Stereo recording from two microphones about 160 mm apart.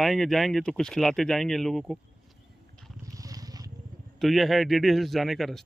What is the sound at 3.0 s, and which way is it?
Vehicle, 20° right (ahead or behind).